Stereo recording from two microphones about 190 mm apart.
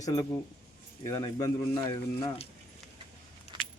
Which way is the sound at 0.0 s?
20° left (ahead or behind).